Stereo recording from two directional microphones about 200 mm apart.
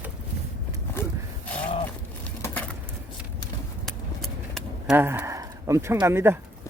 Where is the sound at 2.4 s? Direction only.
10° left (ahead or behind).